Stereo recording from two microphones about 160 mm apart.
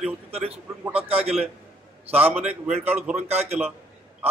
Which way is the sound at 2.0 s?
10° right (ahead or behind).